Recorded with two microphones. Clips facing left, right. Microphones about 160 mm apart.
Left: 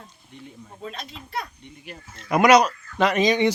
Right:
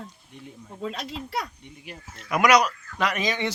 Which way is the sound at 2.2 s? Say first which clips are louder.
Left 4 dB; 30° left (ahead or behind).